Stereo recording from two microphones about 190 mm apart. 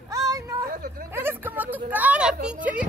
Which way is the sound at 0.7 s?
50° right (ahead or behind).